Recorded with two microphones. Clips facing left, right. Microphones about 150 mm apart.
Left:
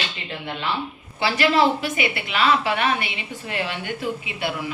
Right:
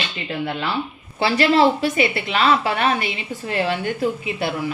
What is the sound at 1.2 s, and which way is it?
A woman's voice, 30° right (ahead or behind).